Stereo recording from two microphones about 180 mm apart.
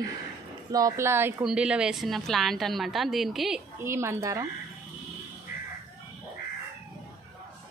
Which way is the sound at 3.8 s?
15° right (ahead or behind).